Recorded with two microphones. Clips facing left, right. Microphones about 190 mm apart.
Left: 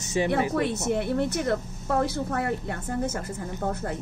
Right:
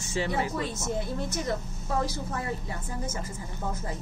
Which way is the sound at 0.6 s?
65° left (ahead or behind).